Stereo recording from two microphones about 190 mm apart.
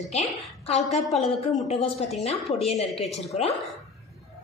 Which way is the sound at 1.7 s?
30° left (ahead or behind).